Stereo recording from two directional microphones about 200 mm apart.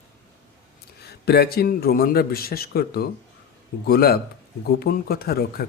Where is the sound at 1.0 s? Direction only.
55° left (ahead or behind).